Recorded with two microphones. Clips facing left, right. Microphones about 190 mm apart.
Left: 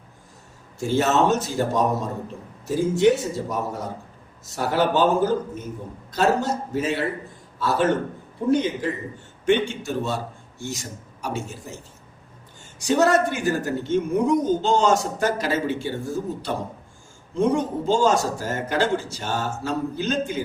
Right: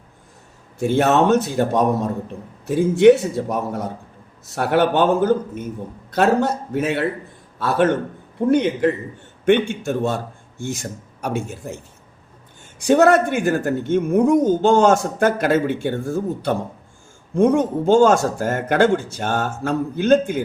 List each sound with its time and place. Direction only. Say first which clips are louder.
0.8 s speech: right 4 dB; 60° right (ahead or behind)
12.8 s speech: right 5 dB; 55° right (ahead or behind)